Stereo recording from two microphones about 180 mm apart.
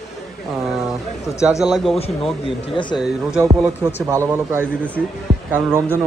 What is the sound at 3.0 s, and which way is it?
A man's voice, 5° right (ahead or behind).